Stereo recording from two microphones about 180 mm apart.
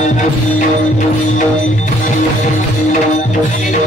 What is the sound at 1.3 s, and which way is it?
Music, 45° left (ahead or behind).